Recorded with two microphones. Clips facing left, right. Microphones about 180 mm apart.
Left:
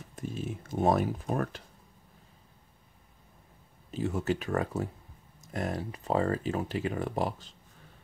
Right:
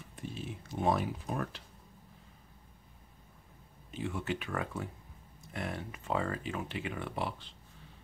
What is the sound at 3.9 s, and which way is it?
Speech, 40° left (ahead or behind).